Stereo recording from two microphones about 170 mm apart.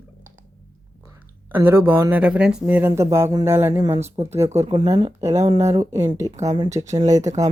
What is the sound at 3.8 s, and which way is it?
Speech, 35° right (ahead or behind).